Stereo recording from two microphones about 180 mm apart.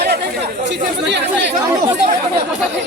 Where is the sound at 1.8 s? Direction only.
35° right (ahead or behind).